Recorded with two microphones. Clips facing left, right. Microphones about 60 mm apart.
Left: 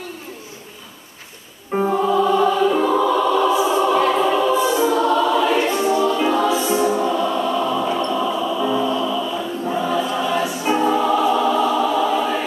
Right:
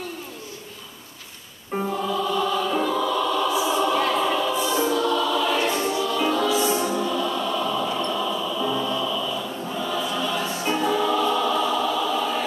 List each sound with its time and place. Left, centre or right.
1.9 s music: left
2.8 s choir: left
6.1 s music: left
8.3 s choir: left
10.8 s music: left